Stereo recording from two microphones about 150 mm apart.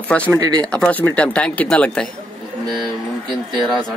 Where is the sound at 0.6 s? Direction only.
5° left (ahead or behind).